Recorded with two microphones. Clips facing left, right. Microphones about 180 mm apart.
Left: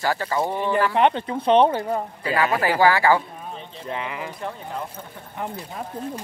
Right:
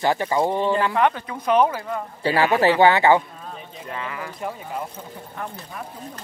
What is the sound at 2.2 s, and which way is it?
Speech, 30° right (ahead or behind).